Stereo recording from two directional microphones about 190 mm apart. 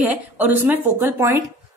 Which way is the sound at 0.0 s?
10° right (ahead or behind).